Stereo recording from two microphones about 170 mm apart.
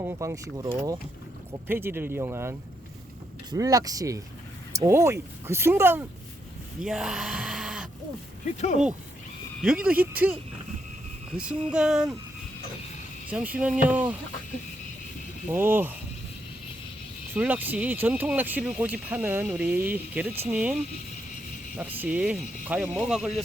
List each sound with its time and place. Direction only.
0.0 s speech: 15° right (ahead or behind)
9.6 s speech: 5° right (ahead or behind)
13.3 s speech: 10° right (ahead or behind)
15.4 s speech: 10° right (ahead or behind)
17.3 s speech: 10° right (ahead or behind)